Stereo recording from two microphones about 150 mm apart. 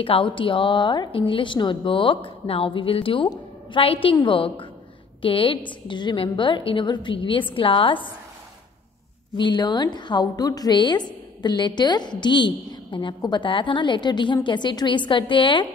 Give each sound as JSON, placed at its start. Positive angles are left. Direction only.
{"t": 0.0, "sound": "a woman's voice", "side_deg": 35}
{"t": 9.4, "sound": "a woman's voice", "side_deg": 30}